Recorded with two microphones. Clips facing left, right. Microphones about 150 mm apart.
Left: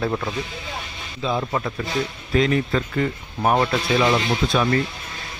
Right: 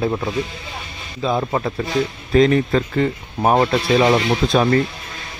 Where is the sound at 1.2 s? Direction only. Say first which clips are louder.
Right 4 dB; 40° right (ahead or behind).